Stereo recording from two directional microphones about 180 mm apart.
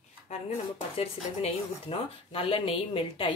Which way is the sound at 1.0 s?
30° left (ahead or behind).